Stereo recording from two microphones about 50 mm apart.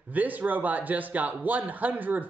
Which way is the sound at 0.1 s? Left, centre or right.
Right.